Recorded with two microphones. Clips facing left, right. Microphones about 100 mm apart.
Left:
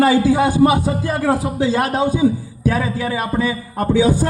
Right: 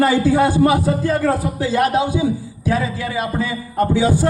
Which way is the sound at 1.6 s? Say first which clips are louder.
Even; 30° left (ahead or behind).